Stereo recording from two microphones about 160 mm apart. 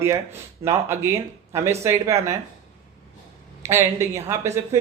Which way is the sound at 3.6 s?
15° right (ahead or behind).